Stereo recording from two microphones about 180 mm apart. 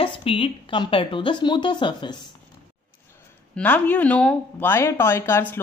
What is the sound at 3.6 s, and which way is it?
Speech, 10° left (ahead or behind).